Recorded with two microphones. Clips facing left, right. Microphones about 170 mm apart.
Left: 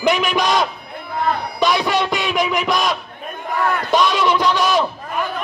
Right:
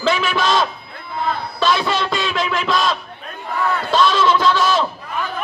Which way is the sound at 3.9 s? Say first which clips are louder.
Right 1 dB; 15° left (ahead or behind).